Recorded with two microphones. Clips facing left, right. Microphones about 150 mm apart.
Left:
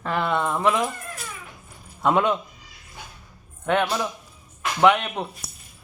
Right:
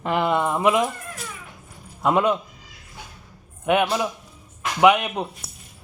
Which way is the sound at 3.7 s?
10° right (ahead or behind).